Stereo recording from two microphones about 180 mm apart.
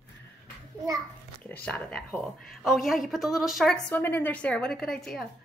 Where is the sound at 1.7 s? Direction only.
5° left (ahead or behind).